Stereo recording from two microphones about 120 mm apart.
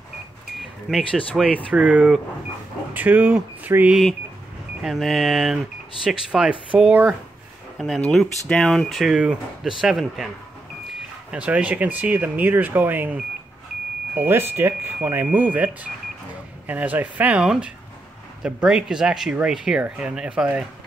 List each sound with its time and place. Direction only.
0.6 s speech: centre (ahead or behind)
4.8 s speech: centre (ahead or behind)
7.7 s speech: centre (ahead or behind)